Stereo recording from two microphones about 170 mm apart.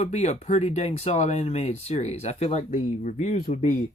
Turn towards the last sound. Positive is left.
turn(degrees=35)  # may be behind; listen again after turning